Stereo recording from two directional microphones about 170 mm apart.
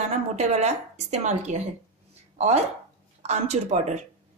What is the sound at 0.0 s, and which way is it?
A woman's voice, 40° right (ahead or behind).